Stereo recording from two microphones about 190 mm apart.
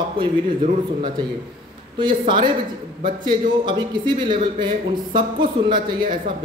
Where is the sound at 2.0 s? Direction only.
25° right (ahead or behind).